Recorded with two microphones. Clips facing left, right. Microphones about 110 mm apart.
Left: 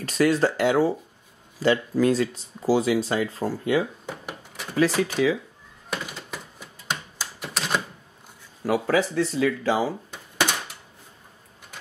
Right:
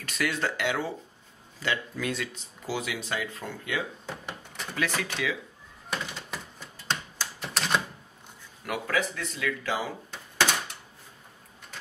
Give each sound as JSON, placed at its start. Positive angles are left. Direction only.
{"t": 0.0, "sound": "speech", "side_deg": 35}
{"t": 4.1, "sound": "a sound", "side_deg": 5}
{"t": 4.7, "sound": "speech", "side_deg": 35}
{"t": 5.9, "sound": "typewriter", "side_deg": 5}
{"t": 8.6, "sound": "speech", "side_deg": 30}
{"t": 10.1, "sound": "a sound", "side_deg": 10}